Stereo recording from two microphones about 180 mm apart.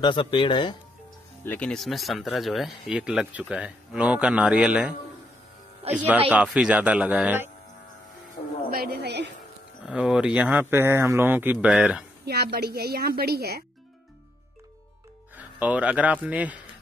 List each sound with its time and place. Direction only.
0.0 s speech: 25° left (ahead or behind)
1.4 s speech: 10° left (ahead or behind); by 7.5 s 10° right (ahead or behind)
8.6 s a woman's voice: 55° right (ahead or behind)
9.8 s speech: 5° right (ahead or behind)
12.3 s a woman's voice: 65° right (ahead or behind)
15.3 s speech: 10° right (ahead or behind)